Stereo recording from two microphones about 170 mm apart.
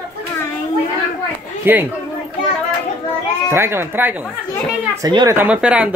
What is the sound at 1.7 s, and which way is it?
Speech, 10° right (ahead or behind).